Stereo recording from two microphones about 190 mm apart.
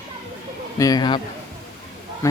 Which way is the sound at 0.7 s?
20° left (ahead or behind).